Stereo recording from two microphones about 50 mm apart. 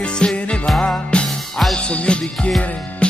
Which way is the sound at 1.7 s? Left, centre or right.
Left.